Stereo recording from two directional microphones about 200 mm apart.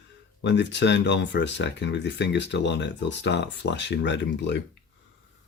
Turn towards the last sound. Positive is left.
turn(degrees=60)  # may be behind; listen again after turning